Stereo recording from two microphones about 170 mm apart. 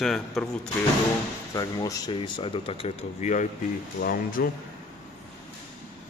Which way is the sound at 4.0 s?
60° left (ahead or behind).